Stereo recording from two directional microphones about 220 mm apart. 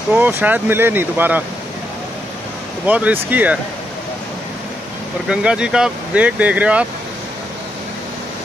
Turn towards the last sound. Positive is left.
turn(degrees=-5)  # may be behind; listen again after turning